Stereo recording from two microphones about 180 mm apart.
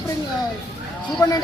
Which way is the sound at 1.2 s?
15° left (ahead or behind).